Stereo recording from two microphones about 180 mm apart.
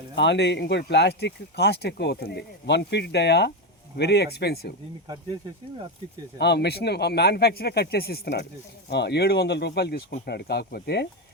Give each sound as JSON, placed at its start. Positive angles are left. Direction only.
{"t": 0.2, "sound": "speech", "side_deg": 75}
{"t": 6.4, "sound": "speech", "side_deg": 70}